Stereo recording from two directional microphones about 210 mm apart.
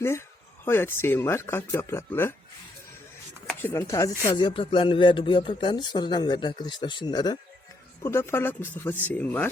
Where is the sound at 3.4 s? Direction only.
10° left (ahead or behind).